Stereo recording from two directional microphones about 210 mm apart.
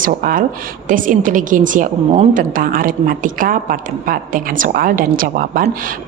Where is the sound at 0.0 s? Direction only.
40° right (ahead or behind).